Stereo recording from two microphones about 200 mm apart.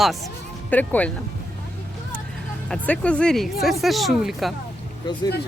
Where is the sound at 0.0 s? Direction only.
Centre (ahead or behind).